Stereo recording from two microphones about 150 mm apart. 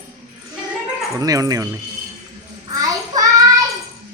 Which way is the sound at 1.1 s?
25° right (ahead or behind).